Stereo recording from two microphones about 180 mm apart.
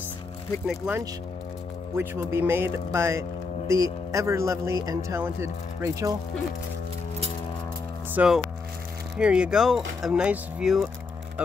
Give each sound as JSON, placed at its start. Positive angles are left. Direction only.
{"t": 0.7, "sound": "speech", "side_deg": -10}
{"t": 8.1, "sound": "speech", "side_deg": -5}